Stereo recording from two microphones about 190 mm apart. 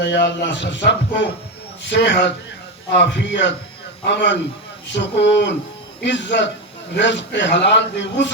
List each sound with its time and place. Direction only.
0.0 s a man's voice: 65° left (ahead or behind)